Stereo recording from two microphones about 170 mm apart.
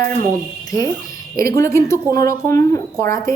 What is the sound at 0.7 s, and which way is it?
A woman's voice, 20° left (ahead or behind).